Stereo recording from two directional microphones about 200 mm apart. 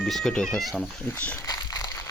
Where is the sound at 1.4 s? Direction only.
20° left (ahead or behind).